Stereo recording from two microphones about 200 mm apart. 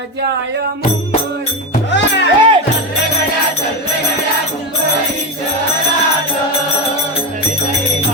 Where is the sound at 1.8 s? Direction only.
60° left (ahead or behind).